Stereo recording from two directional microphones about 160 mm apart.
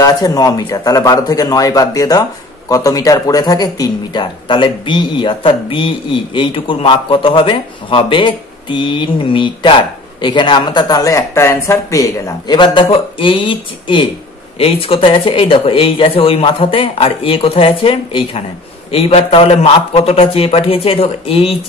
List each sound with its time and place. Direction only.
0.0 s speech: 25° left (ahead or behind)